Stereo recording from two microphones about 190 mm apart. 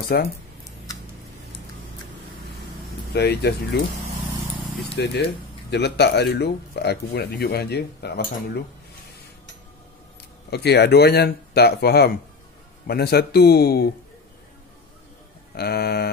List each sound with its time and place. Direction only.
0.1 s speech: 55° left (ahead or behind)
3.1 s speech: 60° left (ahead or behind)
4.9 s speech: 60° left (ahead or behind)
10.5 s speech: 60° left (ahead or behind)
15.5 s speech: 55° left (ahead or behind)